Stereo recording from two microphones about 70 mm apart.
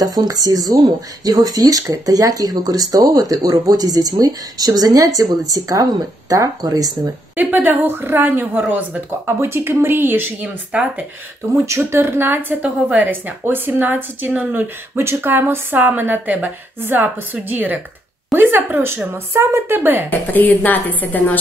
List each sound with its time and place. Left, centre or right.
0.0 s speech: right
7.0 s a woman's voice: right
9.4 s a woman's voice: right
10.7 s speech: centre
11.5 s a woman's voice: right
20.1 s a woman's voice: left